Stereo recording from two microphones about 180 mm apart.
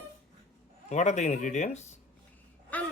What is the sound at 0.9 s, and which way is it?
Speech, 40° left (ahead or behind).